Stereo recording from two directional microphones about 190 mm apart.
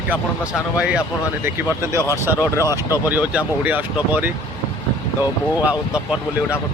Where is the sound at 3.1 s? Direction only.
10° right (ahead or behind).